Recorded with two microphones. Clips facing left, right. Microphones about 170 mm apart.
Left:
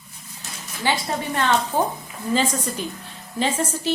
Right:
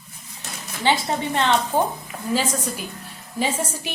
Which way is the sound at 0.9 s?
25° right (ahead or behind).